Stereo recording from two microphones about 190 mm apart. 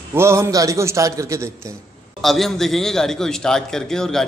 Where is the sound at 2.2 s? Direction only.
Centre (ahead or behind).